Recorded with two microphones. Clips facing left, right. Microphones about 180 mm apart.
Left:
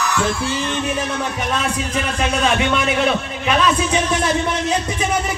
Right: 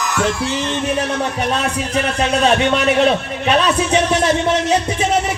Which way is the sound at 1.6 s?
35° right (ahead or behind).